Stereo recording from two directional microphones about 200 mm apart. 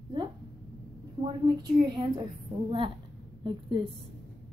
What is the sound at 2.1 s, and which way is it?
Speech, 25° right (ahead or behind).